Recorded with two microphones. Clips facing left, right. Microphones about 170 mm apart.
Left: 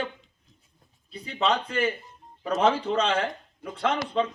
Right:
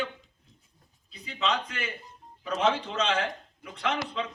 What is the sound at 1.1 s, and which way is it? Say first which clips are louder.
Speech: left 6 dB; 50° left (ahead or behind).